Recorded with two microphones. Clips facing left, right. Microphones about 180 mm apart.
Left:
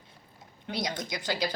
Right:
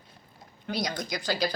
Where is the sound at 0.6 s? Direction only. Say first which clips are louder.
Right 2 dB; 25° left (ahead or behind).